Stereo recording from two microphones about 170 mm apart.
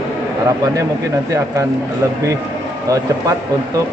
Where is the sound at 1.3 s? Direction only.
20° right (ahead or behind).